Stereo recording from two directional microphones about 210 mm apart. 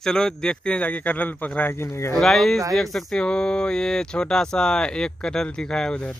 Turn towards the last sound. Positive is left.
turn(degrees=5)  # may be behind; listen again after turning